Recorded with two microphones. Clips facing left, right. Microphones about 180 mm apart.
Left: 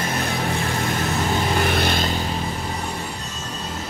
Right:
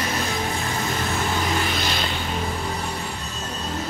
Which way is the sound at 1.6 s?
55° left (ahead or behind).